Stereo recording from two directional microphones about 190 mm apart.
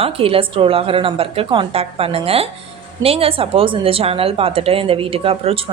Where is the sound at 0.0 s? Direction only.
30° right (ahead or behind).